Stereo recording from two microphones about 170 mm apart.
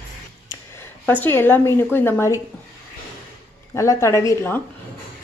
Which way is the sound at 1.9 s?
15° left (ahead or behind).